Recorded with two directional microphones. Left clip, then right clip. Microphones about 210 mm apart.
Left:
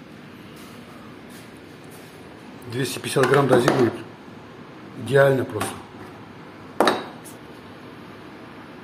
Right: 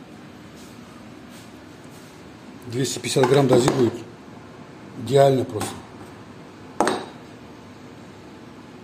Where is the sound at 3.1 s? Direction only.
Centre (ahead or behind).